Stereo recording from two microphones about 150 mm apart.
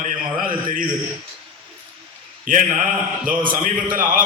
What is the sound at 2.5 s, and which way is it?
A man's voice, 60° right (ahead or behind).